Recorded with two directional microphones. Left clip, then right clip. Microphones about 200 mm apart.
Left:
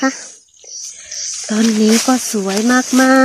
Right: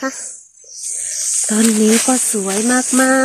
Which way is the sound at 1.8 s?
15° left (ahead or behind).